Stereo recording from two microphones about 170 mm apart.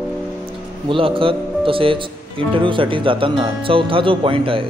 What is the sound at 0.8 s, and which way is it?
A man's voice, 30° right (ahead or behind).